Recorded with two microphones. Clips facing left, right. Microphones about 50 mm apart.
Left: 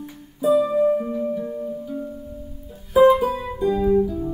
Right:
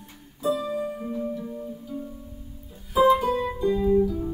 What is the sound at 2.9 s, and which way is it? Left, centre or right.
Music, centre.